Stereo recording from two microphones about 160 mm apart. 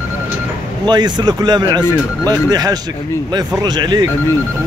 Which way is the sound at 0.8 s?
25° right (ahead or behind).